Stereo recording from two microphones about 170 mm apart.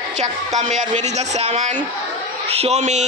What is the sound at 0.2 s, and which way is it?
A man's voice, 40° right (ahead or behind).